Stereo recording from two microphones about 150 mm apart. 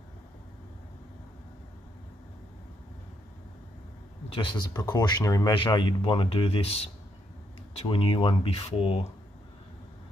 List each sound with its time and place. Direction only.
4.3 s speech: 35° left (ahead or behind)